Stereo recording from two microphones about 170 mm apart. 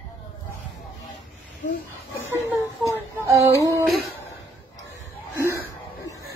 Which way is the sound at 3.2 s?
15° right (ahead or behind).